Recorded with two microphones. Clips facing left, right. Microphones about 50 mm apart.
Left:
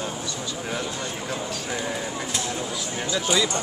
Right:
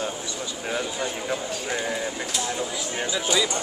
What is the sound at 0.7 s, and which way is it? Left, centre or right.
Speech, centre.